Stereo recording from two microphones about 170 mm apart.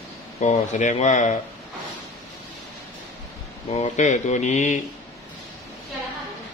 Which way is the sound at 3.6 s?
40° left (ahead or behind).